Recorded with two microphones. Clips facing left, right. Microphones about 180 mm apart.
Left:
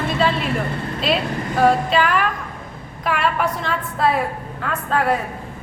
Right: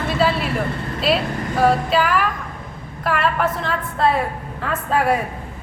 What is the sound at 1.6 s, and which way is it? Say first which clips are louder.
A woman's voice: left 1 dB; 5° right (ahead or behind).